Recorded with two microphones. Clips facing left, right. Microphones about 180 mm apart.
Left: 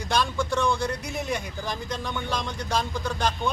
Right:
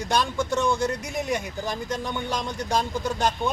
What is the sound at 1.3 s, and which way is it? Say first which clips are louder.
Speech: right 3 dB; 45° right (ahead or behind).